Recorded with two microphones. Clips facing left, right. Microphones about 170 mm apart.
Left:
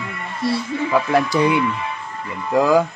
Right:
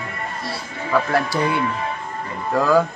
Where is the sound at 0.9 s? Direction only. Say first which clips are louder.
Left 1 dB; 15° left (ahead or behind).